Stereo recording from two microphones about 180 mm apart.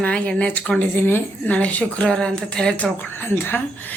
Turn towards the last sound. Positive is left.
turn(degrees=10)  # may be behind; listen again after turning